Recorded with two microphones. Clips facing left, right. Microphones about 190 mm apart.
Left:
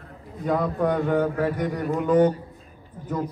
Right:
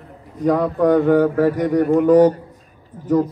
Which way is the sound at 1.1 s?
40° right (ahead or behind).